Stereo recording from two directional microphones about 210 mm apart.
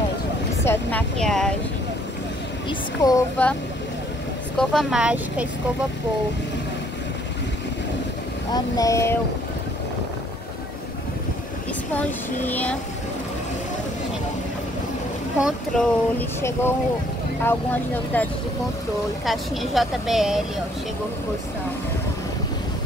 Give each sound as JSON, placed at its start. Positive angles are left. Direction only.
{"t": 0.7, "sound": "a woman's voice", "side_deg": 5}
{"t": 3.0, "sound": "speech", "side_deg": 5}
{"t": 4.6, "sound": "a woman's voice", "side_deg": 0}
{"t": 8.5, "sound": "speech", "side_deg": 15}
{"t": 11.9, "sound": "speech", "side_deg": 5}
{"t": 15.4, "sound": "speech", "side_deg": 0}
{"t": 18.1, "sound": "a woman's voice", "side_deg": 10}